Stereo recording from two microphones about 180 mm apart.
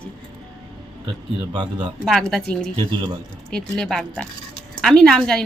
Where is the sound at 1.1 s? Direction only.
25° right (ahead or behind).